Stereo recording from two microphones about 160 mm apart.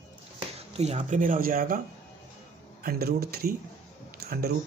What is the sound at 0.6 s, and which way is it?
Speech, 40° right (ahead or behind).